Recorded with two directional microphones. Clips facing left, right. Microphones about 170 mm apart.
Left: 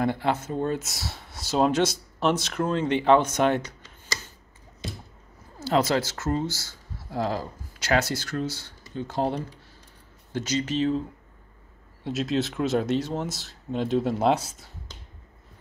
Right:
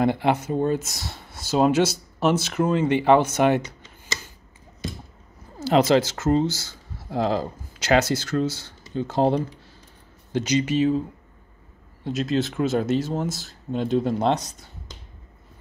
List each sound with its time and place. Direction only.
0.0 s speech: 15° right (ahead or behind)
5.6 s speech: 20° right (ahead or behind)
10.3 s speech: 15° right (ahead or behind); by 14.7 s 5° left (ahead or behind)